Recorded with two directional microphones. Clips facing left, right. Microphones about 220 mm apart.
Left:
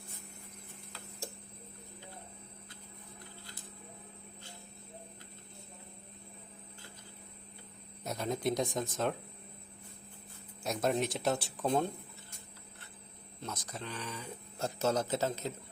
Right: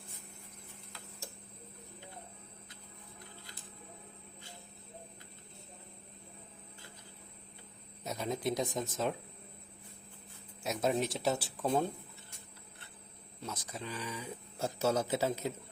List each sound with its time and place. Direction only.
8.0 s speech: centre (ahead or behind)
10.6 s speech: centre (ahead or behind)
13.4 s speech: 5° right (ahead or behind)